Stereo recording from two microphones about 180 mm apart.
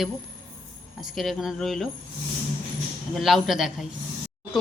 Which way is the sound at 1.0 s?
Centre (ahead or behind).